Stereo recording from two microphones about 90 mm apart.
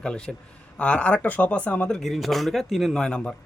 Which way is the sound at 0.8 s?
15° left (ahead or behind).